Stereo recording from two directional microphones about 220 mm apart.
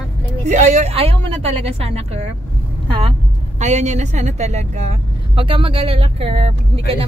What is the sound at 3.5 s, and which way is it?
Speech, 30° right (ahead or behind).